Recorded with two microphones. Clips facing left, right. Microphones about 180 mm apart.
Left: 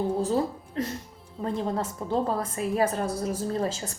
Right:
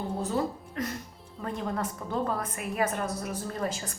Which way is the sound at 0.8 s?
30° left (ahead or behind).